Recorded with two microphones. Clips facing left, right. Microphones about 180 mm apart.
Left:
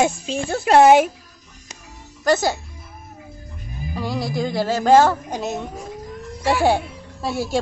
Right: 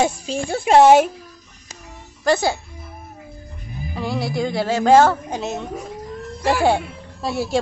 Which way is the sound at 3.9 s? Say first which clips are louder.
Right 1 dB; centre (ahead or behind).